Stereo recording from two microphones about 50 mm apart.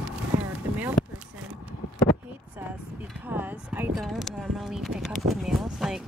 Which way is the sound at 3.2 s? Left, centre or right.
Right.